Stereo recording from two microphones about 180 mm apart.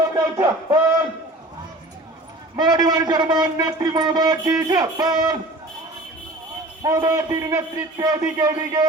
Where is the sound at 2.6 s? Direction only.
20° right (ahead or behind).